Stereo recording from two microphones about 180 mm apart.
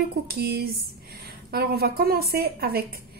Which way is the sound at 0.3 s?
60° right (ahead or behind).